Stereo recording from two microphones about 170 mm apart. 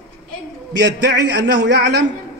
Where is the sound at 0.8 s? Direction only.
85° right.